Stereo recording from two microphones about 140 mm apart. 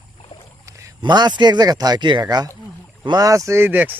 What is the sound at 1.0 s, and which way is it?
Speech, 30° right (ahead or behind).